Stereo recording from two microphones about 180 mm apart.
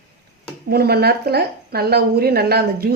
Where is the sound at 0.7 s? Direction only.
60° right (ahead or behind).